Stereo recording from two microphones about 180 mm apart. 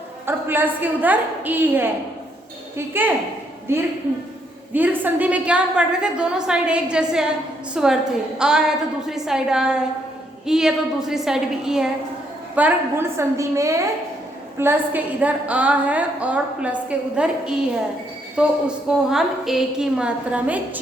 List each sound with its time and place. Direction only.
0.3 s a woman's voice: 10° right (ahead or behind)
4.7 s a woman's voice: 10° right (ahead or behind)